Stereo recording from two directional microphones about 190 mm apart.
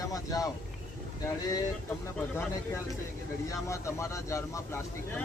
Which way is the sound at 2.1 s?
5° left (ahead or behind).